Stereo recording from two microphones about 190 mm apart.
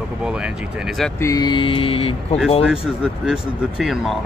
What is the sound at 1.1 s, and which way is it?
Speech, 15° left (ahead or behind).